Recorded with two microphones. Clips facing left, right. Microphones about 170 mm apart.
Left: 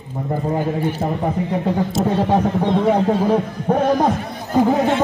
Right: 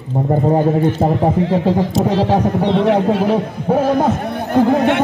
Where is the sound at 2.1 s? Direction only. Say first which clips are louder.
Right 1 dB; 80° right.